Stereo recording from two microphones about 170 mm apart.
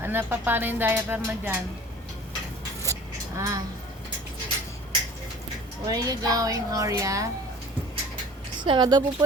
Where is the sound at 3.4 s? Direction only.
20° right (ahead or behind).